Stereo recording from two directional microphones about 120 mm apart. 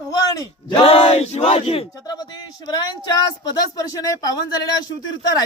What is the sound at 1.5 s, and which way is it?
Speech, 55° left (ahead or behind).